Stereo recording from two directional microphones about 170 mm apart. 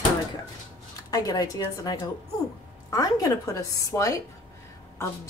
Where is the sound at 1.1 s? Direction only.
20° left (ahead or behind).